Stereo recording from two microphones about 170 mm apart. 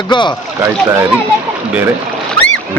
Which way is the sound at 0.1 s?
25° left (ahead or behind).